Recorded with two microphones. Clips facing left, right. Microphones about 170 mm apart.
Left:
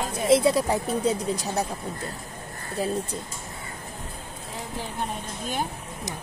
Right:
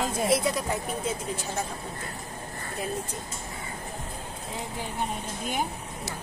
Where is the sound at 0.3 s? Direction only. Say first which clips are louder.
Left 10 dB; 30° left (ahead or behind).